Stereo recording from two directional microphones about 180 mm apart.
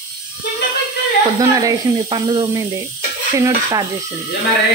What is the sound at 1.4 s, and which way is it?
Speech, 20° right (ahead or behind).